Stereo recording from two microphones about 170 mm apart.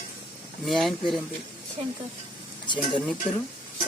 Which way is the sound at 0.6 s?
Centre (ahead or behind).